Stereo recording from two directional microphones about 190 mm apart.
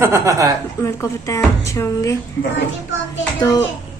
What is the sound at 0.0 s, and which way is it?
Speech, 15° right (ahead or behind).